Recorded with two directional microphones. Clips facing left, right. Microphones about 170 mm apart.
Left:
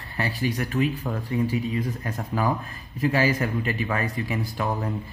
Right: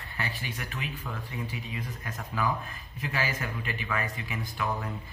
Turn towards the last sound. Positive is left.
turn(degrees=40)  # may be behind; listen again after turning